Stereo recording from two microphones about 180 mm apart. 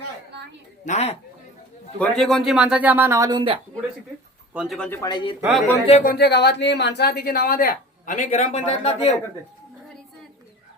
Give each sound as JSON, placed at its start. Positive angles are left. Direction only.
{"t": 0.9, "sound": "a man's voice", "side_deg": 35}
{"t": 2.0, "sound": "speech", "side_deg": 5}
{"t": 4.5, "sound": "a man's voice", "side_deg": 0}
{"t": 4.9, "sound": "speech", "side_deg": 20}
{"t": 5.4, "sound": "a man's voice", "side_deg": 0}
{"t": 5.9, "sound": "speech", "side_deg": 50}